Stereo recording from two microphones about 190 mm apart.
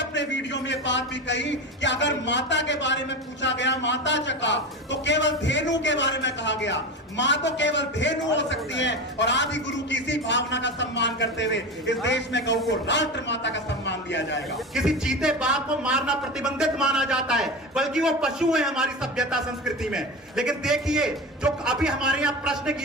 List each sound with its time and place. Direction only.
0.0 s a man's voice: 70° left (ahead or behind)
14.8 s speech: 5° right (ahead or behind)